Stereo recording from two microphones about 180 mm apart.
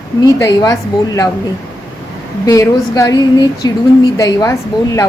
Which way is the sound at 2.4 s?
20° left (ahead or behind).